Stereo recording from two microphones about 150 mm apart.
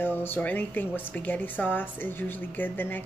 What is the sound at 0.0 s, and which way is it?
A woman's voice, 15° left (ahead or behind).